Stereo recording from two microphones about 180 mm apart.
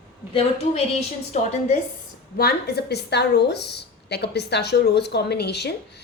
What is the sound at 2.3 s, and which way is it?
A woman's voice, 60° left (ahead or behind).